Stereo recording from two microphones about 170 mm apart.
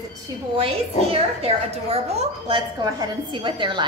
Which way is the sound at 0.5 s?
35° right (ahead or behind).